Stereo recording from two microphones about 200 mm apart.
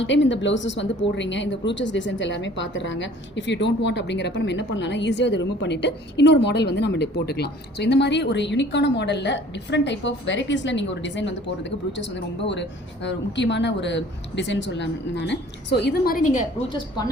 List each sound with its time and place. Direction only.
0.0 s a woman's voice: 65° left (ahead or behind); by 16.5 s 40° left (ahead or behind)
16.6 s a woman's voice: 20° left (ahead or behind)